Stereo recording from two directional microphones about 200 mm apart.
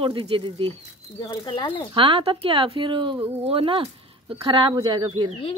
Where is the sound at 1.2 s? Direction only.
25° left (ahead or behind).